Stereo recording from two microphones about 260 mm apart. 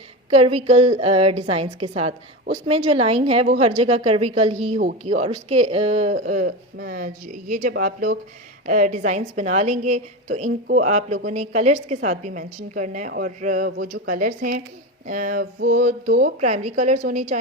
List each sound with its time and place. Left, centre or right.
0.3 s a woman's voice: right